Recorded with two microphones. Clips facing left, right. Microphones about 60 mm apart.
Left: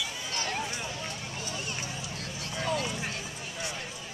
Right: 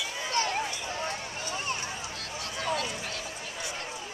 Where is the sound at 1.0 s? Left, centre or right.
Right.